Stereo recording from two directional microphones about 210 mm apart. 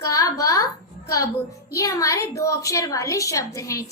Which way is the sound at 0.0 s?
15° left (ahead or behind).